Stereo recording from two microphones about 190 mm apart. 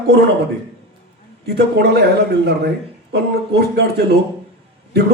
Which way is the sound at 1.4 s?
60° right (ahead or behind).